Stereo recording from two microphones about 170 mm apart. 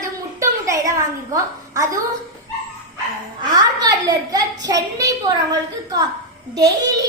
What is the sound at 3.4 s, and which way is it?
A woman's voice, 25° right (ahead or behind).